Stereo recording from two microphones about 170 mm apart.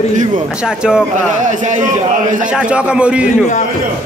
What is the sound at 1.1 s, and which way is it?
Speech, 45° right (ahead or behind).